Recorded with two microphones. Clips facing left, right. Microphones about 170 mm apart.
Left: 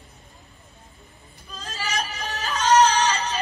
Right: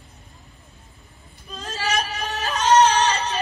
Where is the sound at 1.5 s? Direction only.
20° right (ahead or behind).